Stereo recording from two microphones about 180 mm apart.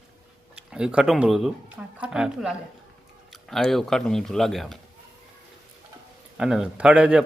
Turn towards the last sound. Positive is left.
turn(degrees=-5)  # may be behind; listen again after turning